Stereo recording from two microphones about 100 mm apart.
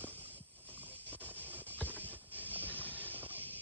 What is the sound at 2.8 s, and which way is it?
Music, 20° left (ahead or behind).